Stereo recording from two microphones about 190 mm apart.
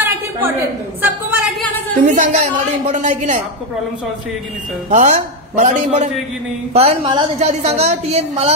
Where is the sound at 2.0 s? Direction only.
40° right (ahead or behind).